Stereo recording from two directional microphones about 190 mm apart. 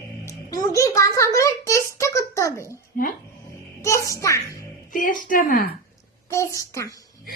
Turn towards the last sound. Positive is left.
turn(degrees=20)  # may be behind; listen again after turning